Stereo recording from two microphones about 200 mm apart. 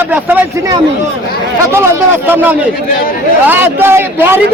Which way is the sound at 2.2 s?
10° right (ahead or behind).